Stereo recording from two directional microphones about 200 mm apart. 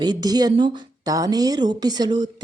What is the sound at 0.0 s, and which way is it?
A woman's voice, 20° right (ahead or behind).